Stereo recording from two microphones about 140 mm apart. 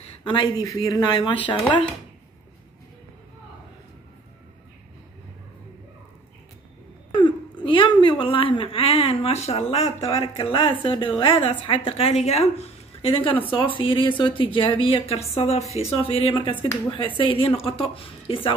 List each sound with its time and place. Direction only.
0.2 s speech: 35° left (ahead or behind)
7.1 s a sound: 35° left (ahead or behind)
8.0 s speech: 35° left (ahead or behind)
15.6 s speech: 25° right (ahead or behind)
16.0 s speech: 40° left (ahead or behind)